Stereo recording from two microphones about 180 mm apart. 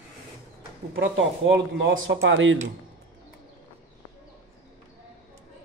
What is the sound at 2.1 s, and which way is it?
Speech, 90° right.